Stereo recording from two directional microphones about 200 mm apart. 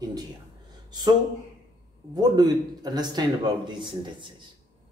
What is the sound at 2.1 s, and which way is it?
A man's voice, 20° right (ahead or behind).